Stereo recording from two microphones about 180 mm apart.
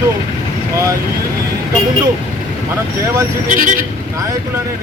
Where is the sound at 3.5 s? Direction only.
50° right (ahead or behind).